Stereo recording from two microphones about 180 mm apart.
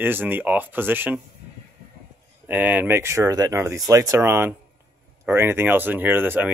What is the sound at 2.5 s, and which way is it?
Speech, 10° right (ahead or behind).